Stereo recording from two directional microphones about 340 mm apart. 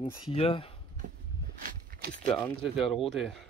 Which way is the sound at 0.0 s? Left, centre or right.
Centre.